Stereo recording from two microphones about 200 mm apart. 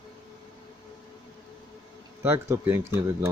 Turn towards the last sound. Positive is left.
turn(degrees=-10)  # may be behind; listen again after turning